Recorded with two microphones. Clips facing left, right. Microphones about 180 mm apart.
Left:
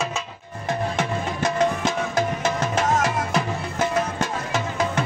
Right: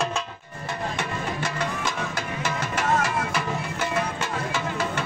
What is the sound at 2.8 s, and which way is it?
Music, 45° left (ahead or behind).